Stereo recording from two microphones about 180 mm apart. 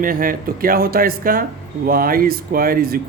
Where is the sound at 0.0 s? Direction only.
50° right (ahead or behind).